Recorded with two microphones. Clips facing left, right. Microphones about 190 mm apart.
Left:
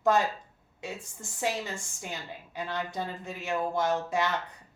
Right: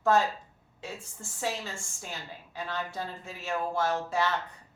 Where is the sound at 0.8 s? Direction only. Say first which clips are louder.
Left 2 dB; 15° left (ahead or behind).